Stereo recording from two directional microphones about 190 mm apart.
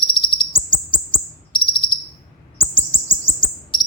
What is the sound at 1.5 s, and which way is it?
Bird, 25° left (ahead or behind).